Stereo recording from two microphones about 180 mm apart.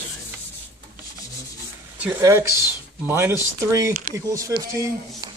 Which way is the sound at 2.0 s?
15° right (ahead or behind).